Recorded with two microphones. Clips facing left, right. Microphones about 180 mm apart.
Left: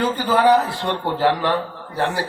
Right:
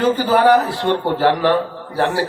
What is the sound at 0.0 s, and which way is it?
Speech, 70° right (ahead or behind).